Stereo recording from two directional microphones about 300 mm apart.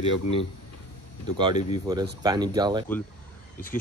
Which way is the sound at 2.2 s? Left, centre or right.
Centre.